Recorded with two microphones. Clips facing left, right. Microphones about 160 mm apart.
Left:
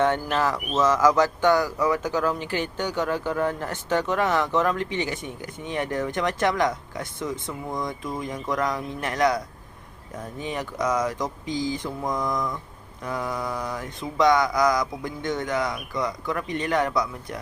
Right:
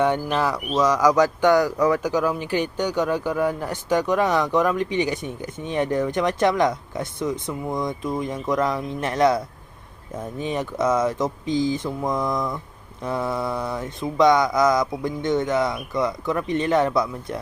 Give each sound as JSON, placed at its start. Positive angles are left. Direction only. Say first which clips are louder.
{"t": 0.0, "sound": "speech", "louder": "right 2 dB", "side_deg": -15}
{"t": 5.7, "sound": "mantra", "louder": "right 5 dB", "side_deg": -20}
{"t": 10.4, "sound": "mantra", "louder": "right 4 dB", "side_deg": -20}